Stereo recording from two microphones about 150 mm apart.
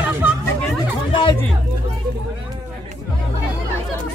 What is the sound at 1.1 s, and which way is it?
Hubbub, 35° left (ahead or behind).